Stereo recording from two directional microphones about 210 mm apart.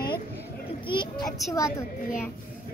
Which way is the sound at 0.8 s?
20° left (ahead or behind).